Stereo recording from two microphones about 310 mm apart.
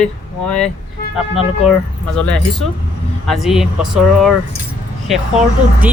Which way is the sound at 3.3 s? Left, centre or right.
Centre.